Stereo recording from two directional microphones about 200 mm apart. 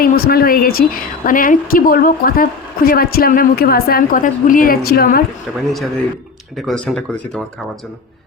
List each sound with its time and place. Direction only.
0.0 s a woman's voice: 50° left (ahead or behind)
6.6 s speech: 5° left (ahead or behind)